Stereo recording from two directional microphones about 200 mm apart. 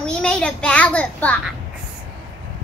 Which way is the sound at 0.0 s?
5° left (ahead or behind).